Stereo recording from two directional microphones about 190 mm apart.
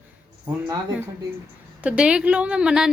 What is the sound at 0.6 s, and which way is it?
A woman's voice, 15° right (ahead or behind).